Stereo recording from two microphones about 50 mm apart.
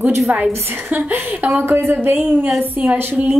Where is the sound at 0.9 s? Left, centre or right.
Right.